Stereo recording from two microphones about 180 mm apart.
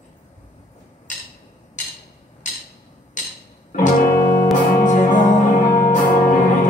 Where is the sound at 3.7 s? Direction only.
50° left (ahead or behind).